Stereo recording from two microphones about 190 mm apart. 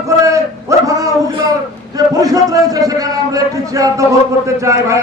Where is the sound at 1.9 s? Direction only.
20° right (ahead or behind).